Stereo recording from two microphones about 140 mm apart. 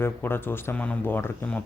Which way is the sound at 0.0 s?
15° left (ahead or behind).